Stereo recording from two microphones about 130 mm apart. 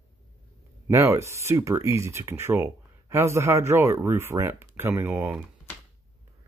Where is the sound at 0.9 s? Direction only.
20° right (ahead or behind).